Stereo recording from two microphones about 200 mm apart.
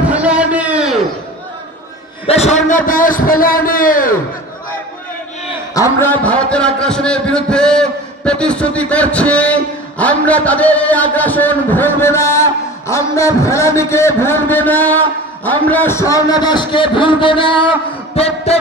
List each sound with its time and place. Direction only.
0.1 s a sound: 5° right (ahead or behind)
2.2 s a man's voice: 30° left (ahead or behind)
5.8 s a man's voice: 10° left (ahead or behind); by 18.6 s 30° left (ahead or behind)